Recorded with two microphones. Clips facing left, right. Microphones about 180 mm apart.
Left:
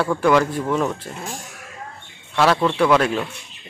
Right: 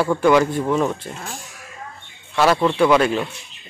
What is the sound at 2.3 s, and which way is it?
Speech, 5° right (ahead or behind).